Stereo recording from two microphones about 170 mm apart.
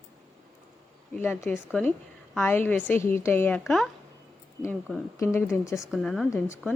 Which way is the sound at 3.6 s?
Centre (ahead or behind).